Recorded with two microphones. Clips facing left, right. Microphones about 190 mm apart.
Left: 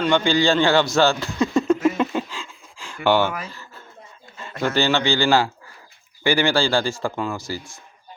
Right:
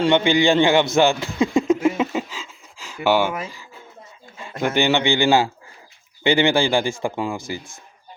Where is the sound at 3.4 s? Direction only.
10° right (ahead or behind).